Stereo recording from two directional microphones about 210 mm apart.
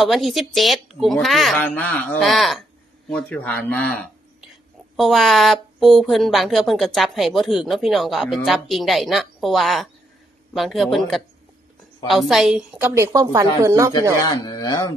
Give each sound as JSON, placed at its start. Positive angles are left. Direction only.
{"t": 0.0, "sound": "a woman's voice", "side_deg": 0}
{"t": 14.2, "sound": "speech", "side_deg": 20}